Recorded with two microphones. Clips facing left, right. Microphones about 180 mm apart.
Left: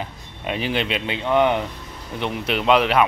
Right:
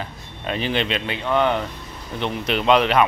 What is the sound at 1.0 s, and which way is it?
Speech, 20° left (ahead or behind).